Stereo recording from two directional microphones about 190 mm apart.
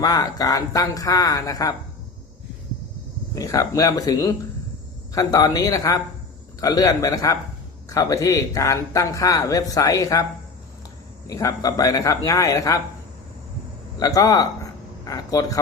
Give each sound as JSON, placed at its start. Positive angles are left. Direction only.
{"t": 0.0, "sound": "speech", "side_deg": 20}
{"t": 3.3, "sound": "speech", "side_deg": 20}
{"t": 11.3, "sound": "speech", "side_deg": 20}
{"t": 14.0, "sound": "a man's voice", "side_deg": 20}